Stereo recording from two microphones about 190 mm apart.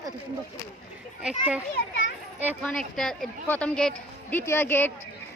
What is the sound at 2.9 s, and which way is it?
Speech, centre (ahead or behind).